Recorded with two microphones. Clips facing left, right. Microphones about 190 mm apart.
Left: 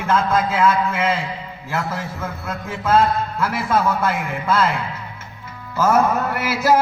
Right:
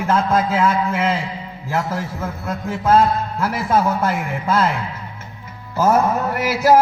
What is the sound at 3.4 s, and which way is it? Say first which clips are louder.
Music: right 2 dB; 40° right (ahead or behind).